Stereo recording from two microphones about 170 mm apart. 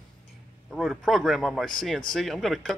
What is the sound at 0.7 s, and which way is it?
A man's voice, centre (ahead or behind).